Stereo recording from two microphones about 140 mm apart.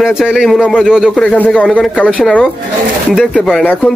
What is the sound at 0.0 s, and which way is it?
Speech, 5° right (ahead or behind).